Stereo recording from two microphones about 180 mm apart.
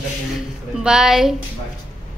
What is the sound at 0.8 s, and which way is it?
Speech, 5° right (ahead or behind).